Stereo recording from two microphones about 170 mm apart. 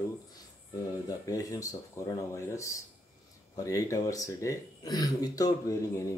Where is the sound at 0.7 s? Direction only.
20° left (ahead or behind).